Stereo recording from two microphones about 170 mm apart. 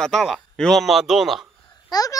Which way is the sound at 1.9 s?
25° left (ahead or behind).